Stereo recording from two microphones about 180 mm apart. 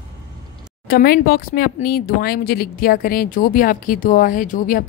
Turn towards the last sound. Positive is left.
turn(degrees=50)  # may be behind; listen again after turning